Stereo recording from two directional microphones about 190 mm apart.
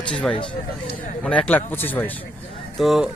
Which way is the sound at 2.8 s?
Centre (ahead or behind).